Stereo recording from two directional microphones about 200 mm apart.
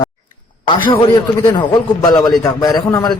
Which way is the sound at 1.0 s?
20° left (ahead or behind).